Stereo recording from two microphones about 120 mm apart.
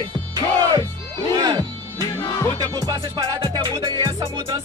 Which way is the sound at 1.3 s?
35° right (ahead or behind).